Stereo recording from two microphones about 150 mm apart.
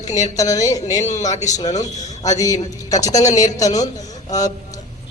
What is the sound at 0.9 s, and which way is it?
Speech, 55° left (ahead or behind).